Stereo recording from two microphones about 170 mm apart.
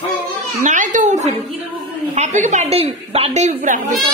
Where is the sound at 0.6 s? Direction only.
50° right (ahead or behind).